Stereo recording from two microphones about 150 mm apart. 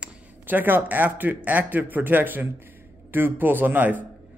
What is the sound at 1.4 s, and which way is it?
Speech, 10° right (ahead or behind).